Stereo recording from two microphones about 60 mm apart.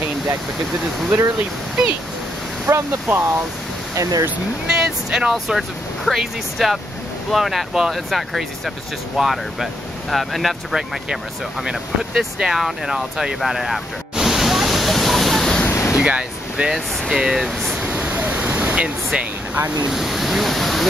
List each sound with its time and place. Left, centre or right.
2.7 s speech: right
3.9 s speech: right
4.6 s speech: centre
15.7 s a sound: left
16.0 s speech: centre
18.1 s waves: right
19.9 s a sound: centre